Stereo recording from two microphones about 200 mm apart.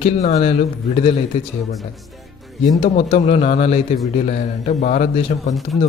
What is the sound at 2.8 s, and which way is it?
A man's voice, 30° left (ahead or behind).